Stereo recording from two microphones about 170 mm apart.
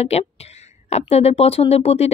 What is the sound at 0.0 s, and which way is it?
Speech, 35° left (ahead or behind).